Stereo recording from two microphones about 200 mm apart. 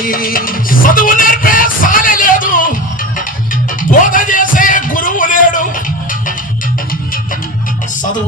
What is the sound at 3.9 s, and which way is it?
Music, 40° left (ahead or behind).